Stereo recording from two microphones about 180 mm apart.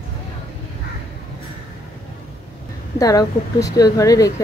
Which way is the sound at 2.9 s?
20° left (ahead or behind).